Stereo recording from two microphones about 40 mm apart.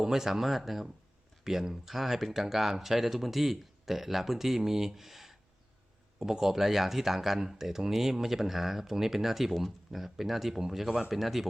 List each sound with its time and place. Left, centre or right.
0.0 s speech: centre